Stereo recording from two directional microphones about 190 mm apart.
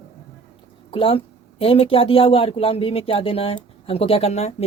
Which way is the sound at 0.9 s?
30° left (ahead or behind).